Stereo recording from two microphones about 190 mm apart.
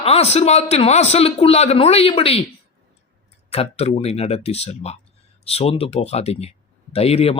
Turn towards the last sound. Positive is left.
turn(degrees=30)  # may be behind; listen again after turning